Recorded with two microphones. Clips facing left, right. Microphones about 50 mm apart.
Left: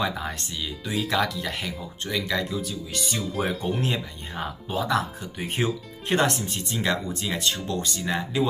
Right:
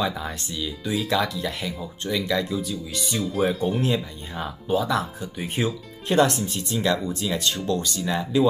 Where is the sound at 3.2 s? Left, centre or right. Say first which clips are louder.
Right 6 dB; centre.